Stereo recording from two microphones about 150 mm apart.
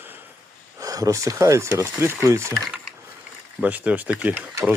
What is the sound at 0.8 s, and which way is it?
Speech, 25° right (ahead or behind).